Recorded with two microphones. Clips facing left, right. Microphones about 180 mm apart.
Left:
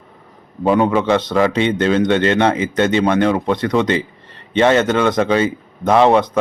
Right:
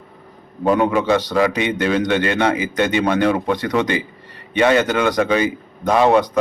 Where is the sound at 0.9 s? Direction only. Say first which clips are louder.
Left 1 dB; 25° left (ahead or behind).